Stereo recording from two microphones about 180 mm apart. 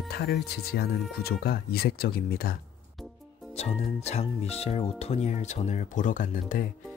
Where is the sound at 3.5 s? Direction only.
35° left (ahead or behind).